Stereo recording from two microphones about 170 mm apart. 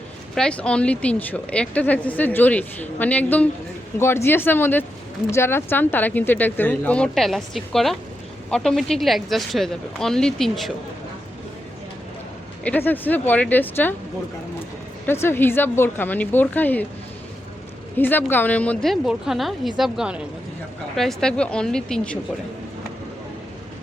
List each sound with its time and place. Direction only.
0.3 s a woman's voice: 5° left (ahead or behind)
12.6 s speech: 10° left (ahead or behind)
15.0 s speech: 15° left (ahead or behind)
17.9 s a woman's voice: 10° left (ahead or behind)